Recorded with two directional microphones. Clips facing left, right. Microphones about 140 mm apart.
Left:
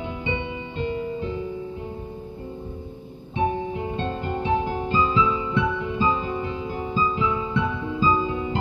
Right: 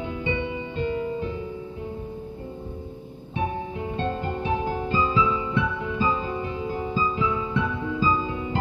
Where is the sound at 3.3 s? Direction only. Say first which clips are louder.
Left 4 dB; 25° left (ahead or behind).